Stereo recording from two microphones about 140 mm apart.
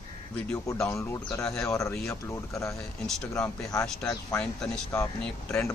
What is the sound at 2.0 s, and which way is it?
Speech, 20° left (ahead or behind).